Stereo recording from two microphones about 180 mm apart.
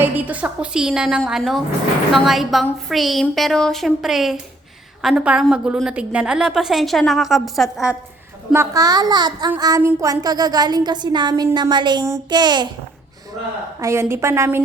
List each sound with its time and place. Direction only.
0.0 s a woman's voice: 10° right (ahead or behind)
8.5 s speech: 20° right (ahead or behind)
13.7 s a woman's voice: 15° right (ahead or behind)